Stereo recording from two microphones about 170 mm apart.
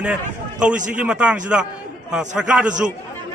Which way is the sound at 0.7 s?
50° right (ahead or behind).